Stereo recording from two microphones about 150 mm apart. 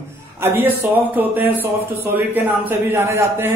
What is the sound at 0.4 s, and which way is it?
Speech, 15° right (ahead or behind).